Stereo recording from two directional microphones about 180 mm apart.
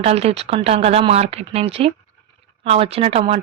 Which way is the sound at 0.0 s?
35° right (ahead or behind).